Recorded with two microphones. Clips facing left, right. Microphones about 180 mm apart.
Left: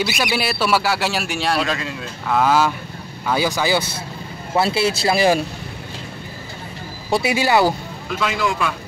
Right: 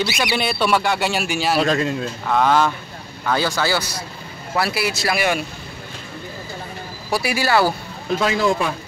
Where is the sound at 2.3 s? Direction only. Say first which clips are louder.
Even; 5° left (ahead or behind); by 5.4 s 30° left (ahead or behind).